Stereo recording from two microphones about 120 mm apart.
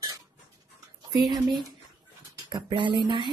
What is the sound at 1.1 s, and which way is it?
A woman's voice, 35° right (ahead or behind).